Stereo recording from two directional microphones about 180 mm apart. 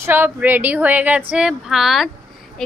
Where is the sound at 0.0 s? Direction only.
10° right (ahead or behind).